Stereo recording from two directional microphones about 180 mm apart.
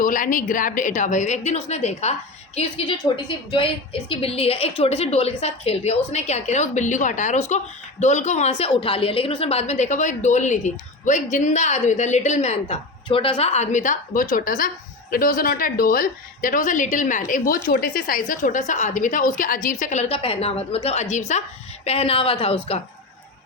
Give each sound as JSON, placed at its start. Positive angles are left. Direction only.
{"t": 0.0, "sound": "a woman's voice", "side_deg": 45}